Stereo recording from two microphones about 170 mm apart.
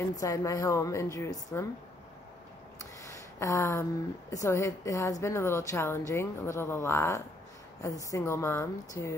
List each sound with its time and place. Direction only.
0.1 s a woman's voice: 20° left (ahead or behind)
2.8 s a sound: 20° left (ahead or behind)
4.3 s speech: 20° left (ahead or behind)